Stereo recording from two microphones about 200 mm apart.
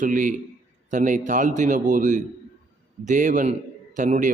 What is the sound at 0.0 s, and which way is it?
A man's voice, 40° right (ahead or behind).